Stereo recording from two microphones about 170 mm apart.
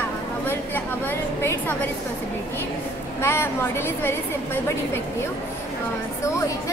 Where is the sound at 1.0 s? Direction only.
10° left (ahead or behind).